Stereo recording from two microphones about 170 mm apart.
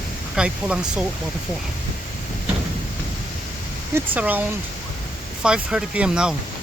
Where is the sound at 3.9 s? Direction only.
10° right (ahead or behind).